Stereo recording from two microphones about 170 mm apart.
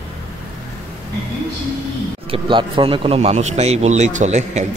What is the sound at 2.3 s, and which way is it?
Speech, 30° right (ahead or behind).